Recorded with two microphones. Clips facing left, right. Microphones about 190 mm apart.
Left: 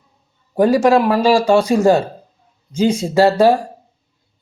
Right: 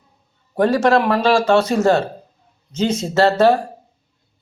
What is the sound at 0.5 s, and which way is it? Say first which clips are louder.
Speech: left 3 dB; 10° left (ahead or behind).